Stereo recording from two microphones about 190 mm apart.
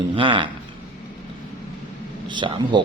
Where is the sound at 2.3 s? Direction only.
25° right (ahead or behind).